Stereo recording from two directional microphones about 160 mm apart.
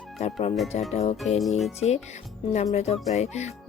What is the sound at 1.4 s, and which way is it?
Speech, centre (ahead or behind).